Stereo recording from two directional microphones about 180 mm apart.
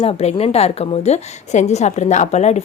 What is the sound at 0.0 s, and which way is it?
A woman's voice, 35° left (ahead or behind).